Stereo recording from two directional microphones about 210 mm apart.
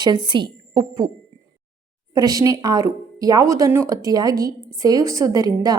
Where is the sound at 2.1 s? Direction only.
15° right (ahead or behind).